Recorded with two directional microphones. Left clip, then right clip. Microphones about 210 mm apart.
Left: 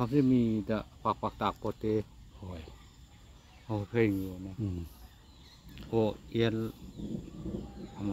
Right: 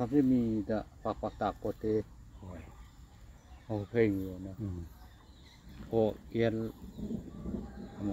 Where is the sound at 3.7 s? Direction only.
40° left (ahead or behind).